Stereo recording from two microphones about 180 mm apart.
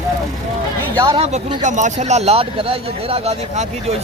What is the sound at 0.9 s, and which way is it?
Speech, 25° right (ahead or behind).